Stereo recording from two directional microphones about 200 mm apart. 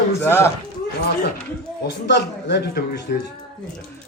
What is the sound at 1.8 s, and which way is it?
A man's voice, 55° left (ahead or behind).